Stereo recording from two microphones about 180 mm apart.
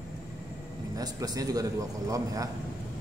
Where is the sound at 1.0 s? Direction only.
20° right (ahead or behind).